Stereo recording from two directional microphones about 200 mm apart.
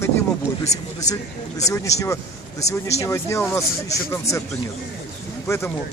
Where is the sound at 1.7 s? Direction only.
15° left (ahead or behind).